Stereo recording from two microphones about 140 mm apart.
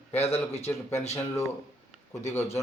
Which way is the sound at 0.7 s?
15° left (ahead or behind).